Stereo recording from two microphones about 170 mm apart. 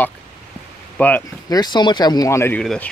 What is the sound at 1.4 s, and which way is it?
Speech, 25° left (ahead or behind).